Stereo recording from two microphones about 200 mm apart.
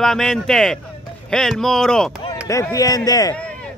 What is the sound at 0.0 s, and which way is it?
Speech, centre (ahead or behind).